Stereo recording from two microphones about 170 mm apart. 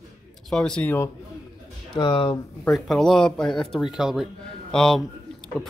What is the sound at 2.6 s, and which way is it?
Speech, centre (ahead or behind).